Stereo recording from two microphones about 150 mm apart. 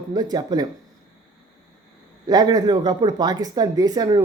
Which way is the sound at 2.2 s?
25° right (ahead or behind).